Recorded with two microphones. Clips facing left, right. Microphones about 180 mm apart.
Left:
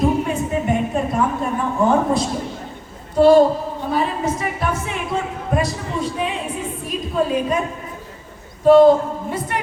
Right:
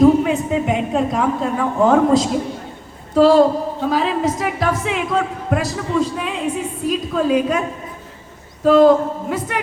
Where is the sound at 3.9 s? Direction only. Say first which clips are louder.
Right 2 dB; 90° right.